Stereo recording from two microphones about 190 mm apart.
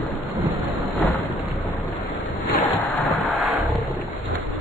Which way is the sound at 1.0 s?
Centre (ahead or behind).